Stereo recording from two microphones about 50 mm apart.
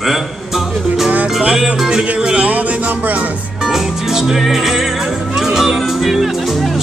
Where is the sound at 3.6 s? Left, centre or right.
Centre.